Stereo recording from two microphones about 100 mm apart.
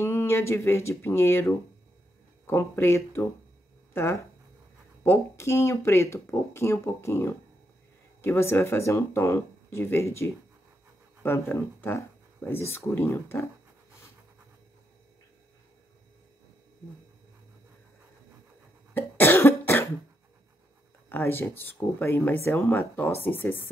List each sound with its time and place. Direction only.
0.0 s speech: 25° left (ahead or behind)
18.9 s cough: 20° left (ahead or behind)
21.1 s speech: 20° left (ahead or behind)